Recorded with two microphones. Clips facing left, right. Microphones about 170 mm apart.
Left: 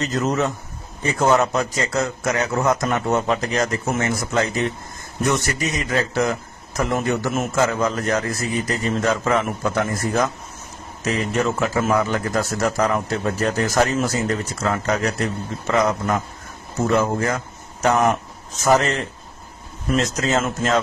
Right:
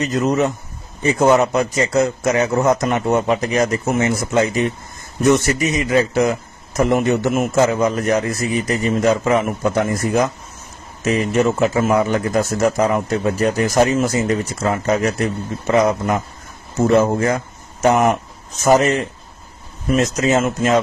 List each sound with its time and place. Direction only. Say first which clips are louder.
0.0 s a man's voice: right 4 dB; 15° right (ahead or behind)
20.0 s a man's voice: right 5 dB; 20° right (ahead or behind)